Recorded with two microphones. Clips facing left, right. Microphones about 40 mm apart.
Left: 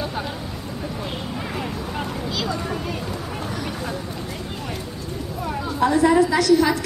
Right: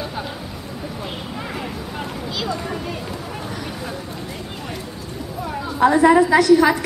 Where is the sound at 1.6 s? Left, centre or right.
Centre.